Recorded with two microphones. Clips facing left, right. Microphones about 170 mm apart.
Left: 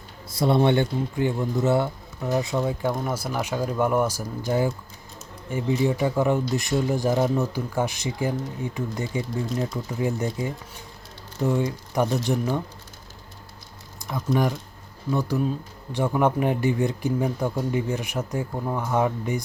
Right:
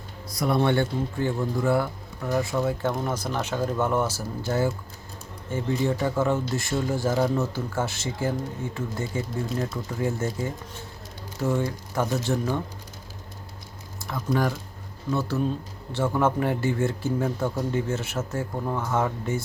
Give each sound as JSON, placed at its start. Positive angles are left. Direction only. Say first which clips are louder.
{"t": 0.3, "sound": "speech", "louder": "left 3 dB", "side_deg": 25}
{"t": 2.8, "sound": "speech", "louder": "left 1 dB", "side_deg": 5}
{"t": 14.0, "sound": "typing", "louder": "left 2 dB", "side_deg": 15}
{"t": 15.1, "sound": "speech", "louder": "left 1 dB", "side_deg": 15}